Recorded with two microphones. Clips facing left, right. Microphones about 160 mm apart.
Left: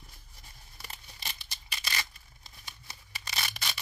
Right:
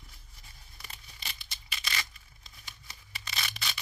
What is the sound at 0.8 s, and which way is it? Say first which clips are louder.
Tearing: left 2 dB; 35° left (ahead or behind).